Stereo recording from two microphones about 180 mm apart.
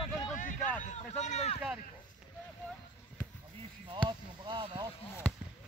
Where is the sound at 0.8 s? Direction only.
40° left (ahead or behind).